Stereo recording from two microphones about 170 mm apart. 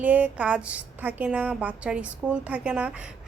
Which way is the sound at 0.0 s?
10° right (ahead or behind).